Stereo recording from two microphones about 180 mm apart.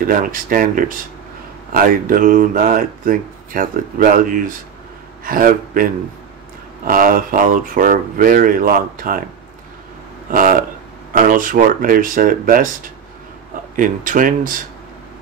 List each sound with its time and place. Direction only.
0.0 s a man's voice: 50° right (ahead or behind)
10.3 s speech: 50° right (ahead or behind)
13.7 s speech: 50° right (ahead or behind)